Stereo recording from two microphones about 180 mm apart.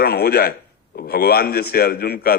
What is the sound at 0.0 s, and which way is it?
A man's voice, 60° left (ahead or behind).